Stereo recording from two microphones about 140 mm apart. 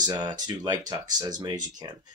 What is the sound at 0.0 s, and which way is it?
Speech, 30° right (ahead or behind).